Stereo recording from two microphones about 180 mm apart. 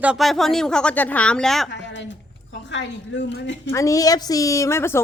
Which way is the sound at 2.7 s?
85° left.